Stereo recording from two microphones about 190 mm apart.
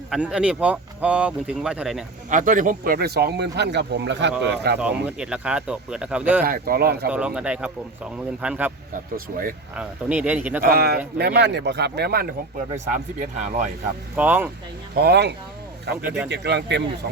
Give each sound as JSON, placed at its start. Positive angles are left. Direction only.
{"t": 0.1, "sound": "speech", "side_deg": -5}
{"t": 2.3, "sound": "speech", "side_deg": -45}
{"t": 5.0, "sound": "speech", "side_deg": -5}
{"t": 6.4, "sound": "speech", "side_deg": -50}
{"t": 7.1, "sound": "speech", "side_deg": -5}
{"t": 9.1, "sound": "speech", "side_deg": -45}
{"t": 9.7, "sound": "speech", "side_deg": -5}
{"t": 10.6, "sound": "speech", "side_deg": -55}
{"t": 12.7, "sound": "speech", "side_deg": -45}
{"t": 14.2, "sound": "speech", "side_deg": -10}
{"t": 14.9, "sound": "speech", "side_deg": -60}
{"t": 16.0, "sound": "speech", "side_deg": -10}
{"t": 16.3, "sound": "speech", "side_deg": -65}